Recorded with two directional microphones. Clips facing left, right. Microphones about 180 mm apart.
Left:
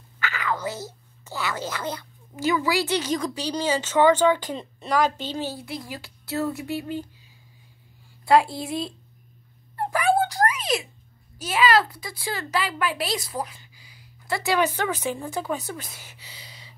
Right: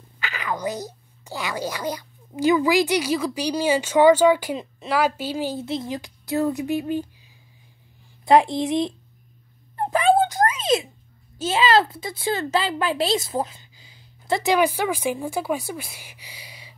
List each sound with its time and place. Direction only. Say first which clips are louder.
0.2 s speech: even; 15° right (ahead or behind)
8.3 s a woman's voice: right 3 dB; 20° right (ahead or behind)
9.8 s a sound: right 4 dB; 20° right (ahead or behind)
11.3 s a woman's voice: right 2 dB; 25° right (ahead or behind)